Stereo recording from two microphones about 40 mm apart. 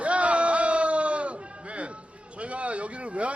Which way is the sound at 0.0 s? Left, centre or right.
Right.